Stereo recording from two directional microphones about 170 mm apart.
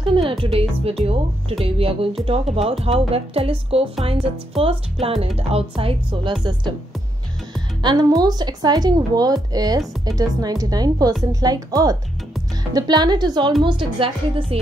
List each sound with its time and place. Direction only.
0.0 s speech: 30° right (ahead or behind)
5.0 s speech: centre (ahead or behind)
5.5 s speech: 35° right (ahead or behind)
7.8 s speech: 25° right (ahead or behind)